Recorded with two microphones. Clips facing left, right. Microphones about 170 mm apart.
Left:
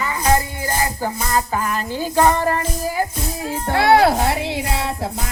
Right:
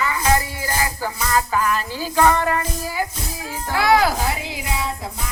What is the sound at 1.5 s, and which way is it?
Music, 30° left (ahead or behind).